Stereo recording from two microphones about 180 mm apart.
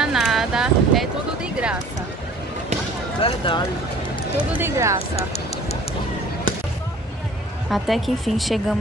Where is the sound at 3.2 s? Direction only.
30° left (ahead or behind).